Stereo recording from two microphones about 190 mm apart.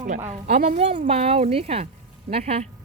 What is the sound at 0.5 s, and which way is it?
A woman's voice, 40° right (ahead or behind).